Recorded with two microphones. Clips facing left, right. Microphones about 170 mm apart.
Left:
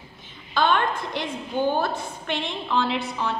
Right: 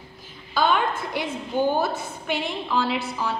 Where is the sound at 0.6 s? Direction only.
5° right (ahead or behind).